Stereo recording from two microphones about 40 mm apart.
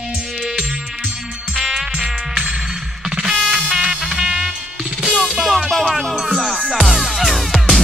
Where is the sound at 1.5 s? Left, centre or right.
Centre.